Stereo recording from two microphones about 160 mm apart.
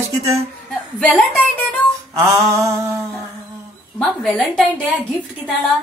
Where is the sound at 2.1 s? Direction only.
20° right (ahead or behind).